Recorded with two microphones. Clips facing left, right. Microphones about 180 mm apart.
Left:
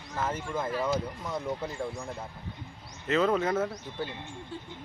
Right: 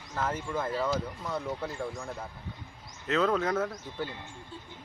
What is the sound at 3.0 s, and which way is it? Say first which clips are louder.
Speech: left 1 dB; centre (ahead or behind).